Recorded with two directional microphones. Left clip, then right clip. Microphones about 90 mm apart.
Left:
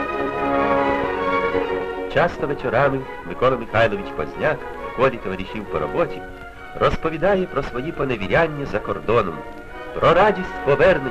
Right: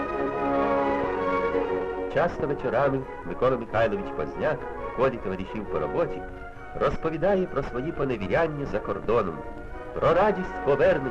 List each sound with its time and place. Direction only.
0.0 s music: 30° left (ahead or behind)
2.4 s a man's voice: 25° left (ahead or behind)